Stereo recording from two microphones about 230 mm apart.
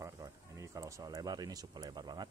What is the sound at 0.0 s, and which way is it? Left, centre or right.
Speech, centre.